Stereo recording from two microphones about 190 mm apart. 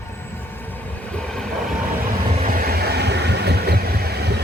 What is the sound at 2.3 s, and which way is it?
Vehicle, 45° right (ahead or behind).